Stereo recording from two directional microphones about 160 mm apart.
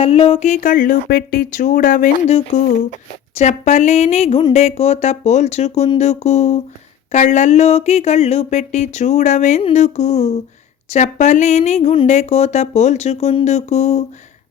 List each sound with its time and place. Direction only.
0.0 s speech: 35° left (ahead or behind); by 2.2 s 60° left (ahead or behind)
2.2 s speech: 45° left (ahead or behind)